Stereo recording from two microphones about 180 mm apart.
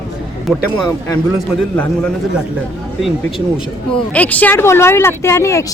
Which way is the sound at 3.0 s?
Centre (ahead or behind).